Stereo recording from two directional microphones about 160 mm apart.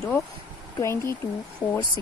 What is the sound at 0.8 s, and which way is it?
Speech, 15° left (ahead or behind).